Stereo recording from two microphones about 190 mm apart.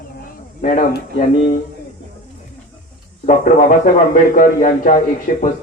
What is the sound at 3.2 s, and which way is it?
A man's voice, 40° left (ahead or behind).